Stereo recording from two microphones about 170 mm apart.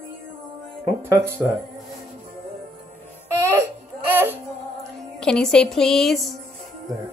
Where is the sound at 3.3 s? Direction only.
15° right (ahead or behind).